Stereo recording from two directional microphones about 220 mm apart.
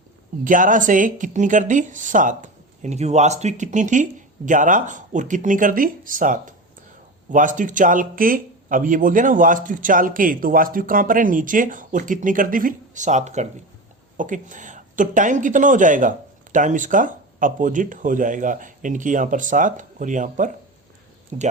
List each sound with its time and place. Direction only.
0.4 s speech: 35° right (ahead or behind)